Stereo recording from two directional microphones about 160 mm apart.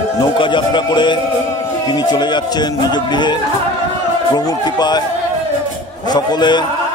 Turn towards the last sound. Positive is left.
turn(degrees=30)  # may be behind; listen again after turning